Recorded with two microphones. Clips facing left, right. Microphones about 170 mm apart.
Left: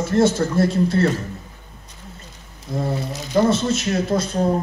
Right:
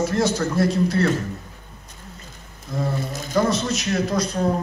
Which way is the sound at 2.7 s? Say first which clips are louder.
Left 2 dB; 25° left (ahead or behind).